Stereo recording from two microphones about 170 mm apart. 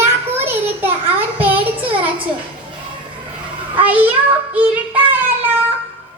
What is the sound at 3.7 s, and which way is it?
Speech, 10° right (ahead or behind).